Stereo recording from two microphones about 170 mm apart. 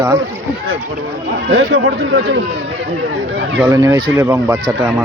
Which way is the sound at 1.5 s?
90° right.